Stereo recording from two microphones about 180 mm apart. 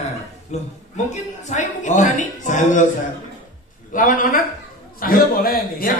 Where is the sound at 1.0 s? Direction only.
40° left (ahead or behind).